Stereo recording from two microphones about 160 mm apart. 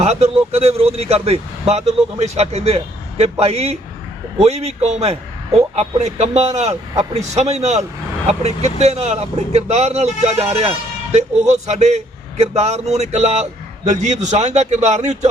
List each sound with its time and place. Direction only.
0.0 s speech: 40° right (ahead or behind)